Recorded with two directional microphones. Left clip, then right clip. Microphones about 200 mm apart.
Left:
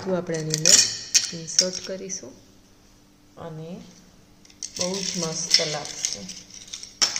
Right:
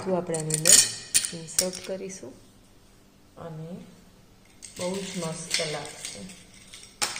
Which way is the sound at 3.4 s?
20° left (ahead or behind).